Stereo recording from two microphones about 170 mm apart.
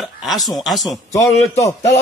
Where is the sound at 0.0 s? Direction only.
Centre (ahead or behind).